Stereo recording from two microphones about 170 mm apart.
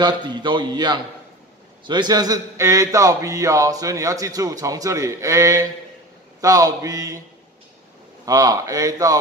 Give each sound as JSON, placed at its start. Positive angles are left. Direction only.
{"t": 0.0, "sound": "a man's voice", "side_deg": -25}
{"t": 8.3, "sound": "a man's voice", "side_deg": -20}